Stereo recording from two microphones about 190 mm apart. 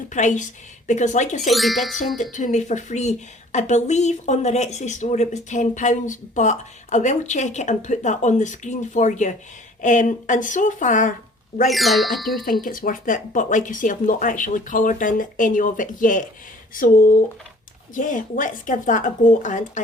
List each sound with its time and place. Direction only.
0.1 s speech: 40° left (ahead or behind)
1.4 s speech: centre (ahead or behind)
2.3 s speech: 40° left (ahead or behind)
11.7 s speech: centre (ahead or behind)
12.6 s speech: 45° left (ahead or behind)